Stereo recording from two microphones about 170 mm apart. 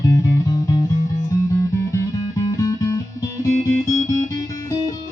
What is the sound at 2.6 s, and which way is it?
Music, 20° left (ahead or behind).